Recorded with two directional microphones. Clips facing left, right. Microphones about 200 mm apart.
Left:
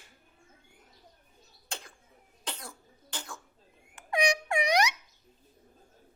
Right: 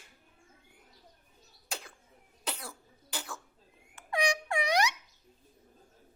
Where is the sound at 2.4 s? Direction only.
10° right (ahead or behind).